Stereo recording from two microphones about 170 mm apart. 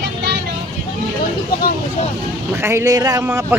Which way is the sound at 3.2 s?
10° right (ahead or behind).